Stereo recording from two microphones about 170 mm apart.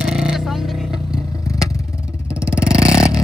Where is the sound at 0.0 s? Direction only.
5° right (ahead or behind).